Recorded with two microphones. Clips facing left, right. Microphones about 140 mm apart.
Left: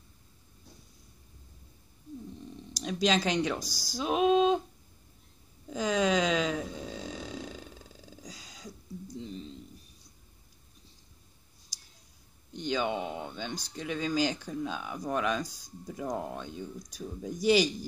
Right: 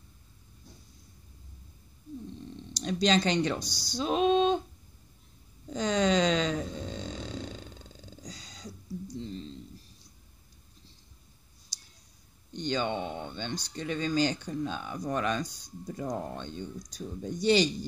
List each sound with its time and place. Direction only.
2.7 s speech: 5° left (ahead or behind)
5.7 s a sound: 5° left (ahead or behind)
12.5 s speech: 5° left (ahead or behind)